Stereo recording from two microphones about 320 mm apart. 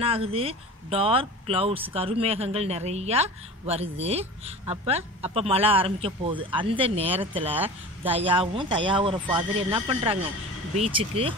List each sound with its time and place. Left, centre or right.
0.0 s speech: centre